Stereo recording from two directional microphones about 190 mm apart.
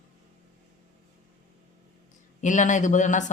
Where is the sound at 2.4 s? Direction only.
40° left (ahead or behind).